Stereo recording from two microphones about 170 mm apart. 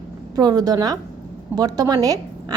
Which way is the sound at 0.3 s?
25° right (ahead or behind).